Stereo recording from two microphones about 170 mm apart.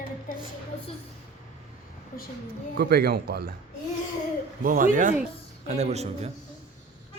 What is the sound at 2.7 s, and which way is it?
Speech, 65° right (ahead or behind).